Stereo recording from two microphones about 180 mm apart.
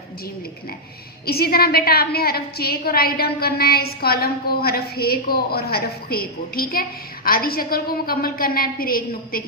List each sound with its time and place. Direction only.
1.3 s a woman's voice: 60° left (ahead or behind)